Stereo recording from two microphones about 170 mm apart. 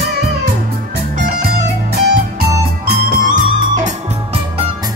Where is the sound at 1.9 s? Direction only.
70° right (ahead or behind); by 3.9 s 50° right (ahead or behind).